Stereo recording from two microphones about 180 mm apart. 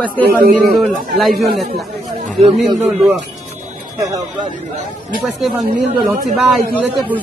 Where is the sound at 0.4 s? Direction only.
50° right (ahead or behind).